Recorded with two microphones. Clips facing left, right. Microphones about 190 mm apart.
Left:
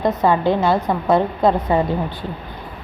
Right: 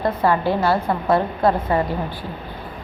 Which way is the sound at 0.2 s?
20° left (ahead or behind).